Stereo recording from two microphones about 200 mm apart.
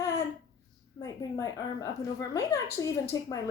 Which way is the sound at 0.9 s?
20° left (ahead or behind).